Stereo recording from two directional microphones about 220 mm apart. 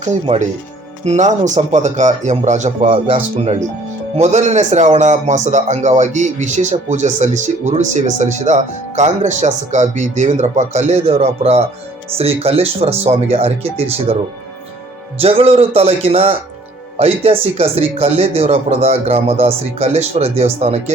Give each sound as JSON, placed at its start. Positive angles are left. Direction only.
{"t": 0.0, "sound": "a man's voice", "side_deg": -30}
{"t": 15.2, "sound": "speech", "side_deg": -25}